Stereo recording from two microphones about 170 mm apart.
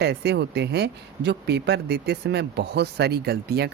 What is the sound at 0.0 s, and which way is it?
Speech, 80° right.